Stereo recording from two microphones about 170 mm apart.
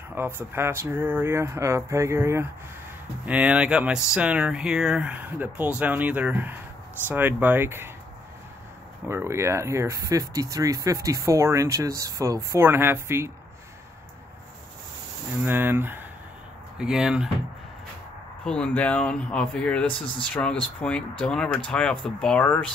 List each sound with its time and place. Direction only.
0.1 s speech: 10° right (ahead or behind)
9.1 s speech: 15° right (ahead or behind)
15.4 s speech: 10° right (ahead or behind)
18.4 s speech: 5° left (ahead or behind)